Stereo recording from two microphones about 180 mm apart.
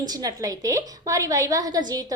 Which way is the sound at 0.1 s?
20° right (ahead or behind).